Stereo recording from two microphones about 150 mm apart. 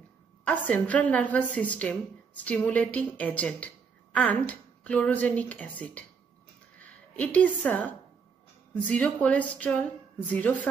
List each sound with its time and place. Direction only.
0.5 s a woman's voice: 10° left (ahead or behind)